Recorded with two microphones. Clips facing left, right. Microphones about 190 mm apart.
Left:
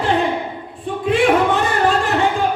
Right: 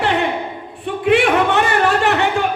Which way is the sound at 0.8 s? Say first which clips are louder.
Right 1 dB; 70° right (ahead or behind).